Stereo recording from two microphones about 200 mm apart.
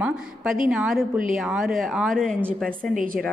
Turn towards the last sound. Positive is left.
turn(degrees=-45)  # may be behind; listen again after turning